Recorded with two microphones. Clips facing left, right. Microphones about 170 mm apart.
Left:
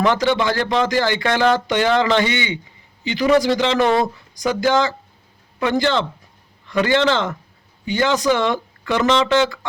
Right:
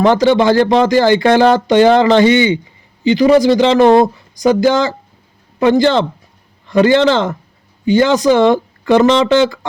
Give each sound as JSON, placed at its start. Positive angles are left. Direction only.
{"t": 0.0, "sound": "speech", "side_deg": -35}